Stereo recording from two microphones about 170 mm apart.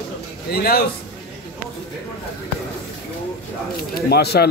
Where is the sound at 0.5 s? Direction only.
65° left (ahead or behind).